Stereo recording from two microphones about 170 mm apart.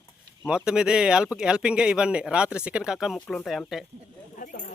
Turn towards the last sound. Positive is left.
turn(degrees=55)  # may be behind; listen again after turning